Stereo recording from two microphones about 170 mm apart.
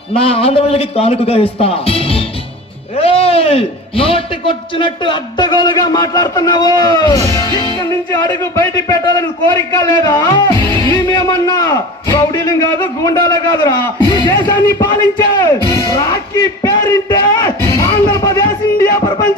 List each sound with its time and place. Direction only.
0.1 s a man's voice: 35° left (ahead or behind)
18.1 s music: 20° left (ahead or behind)